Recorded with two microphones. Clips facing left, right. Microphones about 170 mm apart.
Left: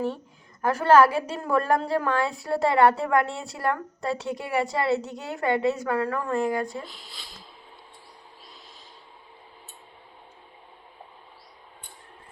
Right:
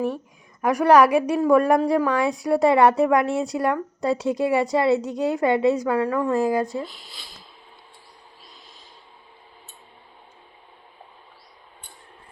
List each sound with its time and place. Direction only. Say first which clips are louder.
0.6 s a woman's voice: right 2 dB; 15° right (ahead or behind)